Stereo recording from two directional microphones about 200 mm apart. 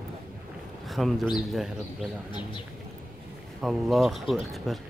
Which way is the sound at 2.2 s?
25° left (ahead or behind).